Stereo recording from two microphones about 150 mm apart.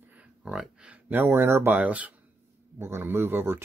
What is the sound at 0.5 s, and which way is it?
Speech, 5° right (ahead or behind).